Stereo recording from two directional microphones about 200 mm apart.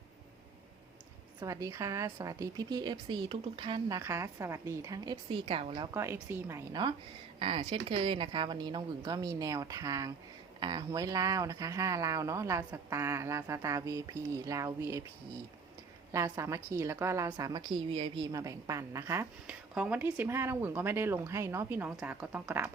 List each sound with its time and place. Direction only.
1.4 s a woman's voice: 15° right (ahead or behind)
16.1 s a woman's voice: 15° right (ahead or behind)